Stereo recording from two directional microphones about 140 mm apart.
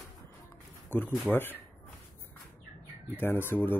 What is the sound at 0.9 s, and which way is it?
Speech, 15° left (ahead or behind).